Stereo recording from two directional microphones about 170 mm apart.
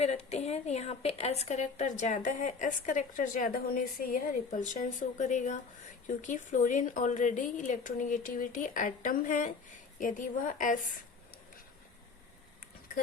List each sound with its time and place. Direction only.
0.0 s a woman's voice: 40° left (ahead or behind)